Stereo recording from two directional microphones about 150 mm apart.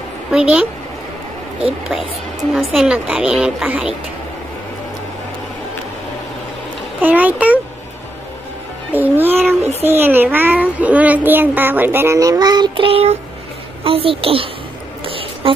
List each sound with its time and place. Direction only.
0.3 s a woman's voice: 5° right (ahead or behind)
2.5 s a woman's voice: 5° right (ahead or behind)
7.0 s a child's voice: 10° right (ahead or behind)
8.9 s music: 10° right (ahead or behind)
9.8 s a child's voice: 15° right (ahead or behind); by 14.5 s 40° right (ahead or behind)
15.0 s a sound: 35° right (ahead or behind)